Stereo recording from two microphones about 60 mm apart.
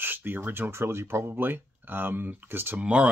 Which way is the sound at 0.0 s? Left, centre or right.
Right.